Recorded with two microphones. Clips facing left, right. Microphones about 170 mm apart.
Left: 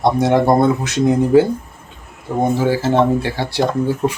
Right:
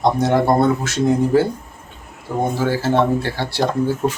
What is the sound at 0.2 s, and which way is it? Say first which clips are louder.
Speech: left 4 dB; 15° left (ahead or behind).